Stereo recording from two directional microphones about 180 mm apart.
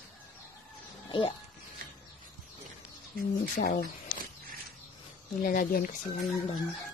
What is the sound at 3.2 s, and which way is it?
Speech, 60° left (ahead or behind).